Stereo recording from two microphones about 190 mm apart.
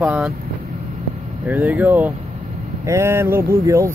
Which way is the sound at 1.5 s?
10° right (ahead or behind).